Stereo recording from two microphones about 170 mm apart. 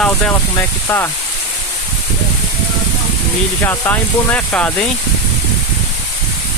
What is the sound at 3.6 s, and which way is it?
Speech, 10° left (ahead or behind).